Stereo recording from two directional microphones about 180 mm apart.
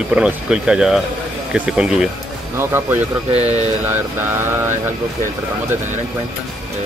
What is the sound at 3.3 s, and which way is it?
Speech, 35° right (ahead or behind).